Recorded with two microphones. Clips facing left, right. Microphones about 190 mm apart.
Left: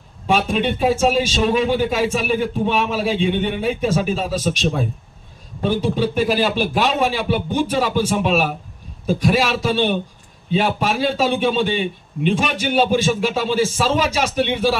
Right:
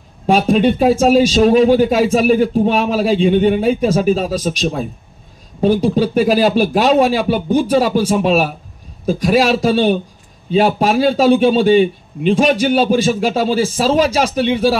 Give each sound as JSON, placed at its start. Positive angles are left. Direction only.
{"t": 0.3, "sound": "speech", "side_deg": -40}